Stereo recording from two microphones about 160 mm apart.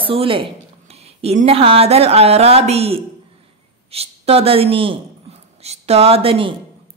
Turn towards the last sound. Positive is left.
turn(degrees=-35)  # may be behind; listen again after turning